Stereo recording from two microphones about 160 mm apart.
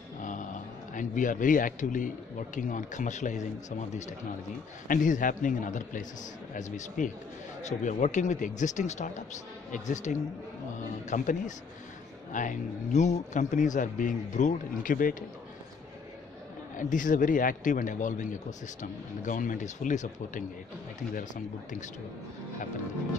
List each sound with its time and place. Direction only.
0.2 s a man's voice: 50° left (ahead or behind)
4.8 s a man's voice: 55° left (ahead or behind)
16.7 s a man's voice: 55° left (ahead or behind)